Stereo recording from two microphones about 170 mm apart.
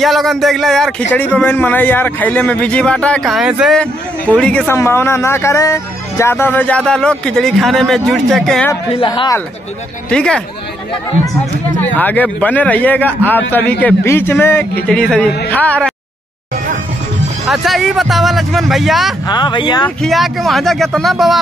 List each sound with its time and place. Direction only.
0.0 s speech: centre (ahead or behind)
8.9 s speech: 30° left (ahead or behind)
10.0 s speech: 5° left (ahead or behind)
11.8 s speech: 10° left (ahead or behind)
17.5 s speech: centre (ahead or behind)
19.2 s speech: 25° left (ahead or behind)
20.0 s speech: centre (ahead or behind)